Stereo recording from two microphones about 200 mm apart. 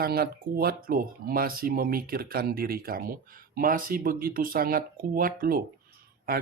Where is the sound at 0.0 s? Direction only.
50° right (ahead or behind).